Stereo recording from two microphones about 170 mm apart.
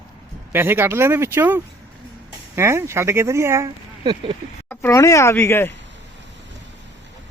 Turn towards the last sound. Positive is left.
turn(degrees=15)  # may be behind; listen again after turning